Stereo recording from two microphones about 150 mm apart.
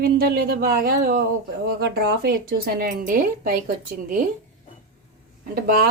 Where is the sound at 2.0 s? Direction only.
90° right; by 3.6 s 75° right (ahead or behind).